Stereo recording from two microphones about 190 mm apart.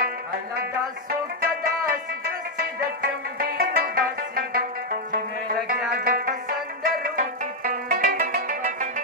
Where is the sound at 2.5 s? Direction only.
50° right (ahead or behind).